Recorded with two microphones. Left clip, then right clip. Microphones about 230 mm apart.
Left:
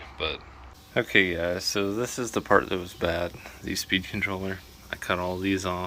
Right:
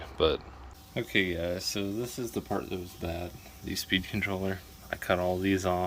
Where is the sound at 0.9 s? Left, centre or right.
Centre.